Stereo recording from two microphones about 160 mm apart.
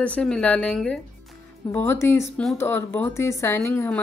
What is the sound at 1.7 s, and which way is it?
Speech, 15° left (ahead or behind).